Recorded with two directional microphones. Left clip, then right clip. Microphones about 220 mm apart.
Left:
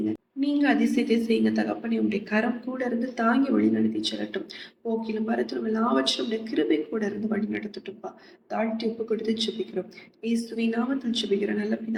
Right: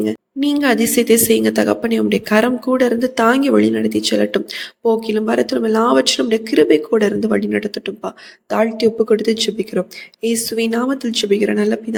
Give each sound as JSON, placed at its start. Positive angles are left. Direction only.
{"t": 0.0, "sound": "speech", "side_deg": -50}